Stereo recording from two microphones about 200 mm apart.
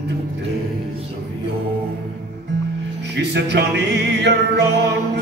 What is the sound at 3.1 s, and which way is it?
Music, 60° right (ahead or behind).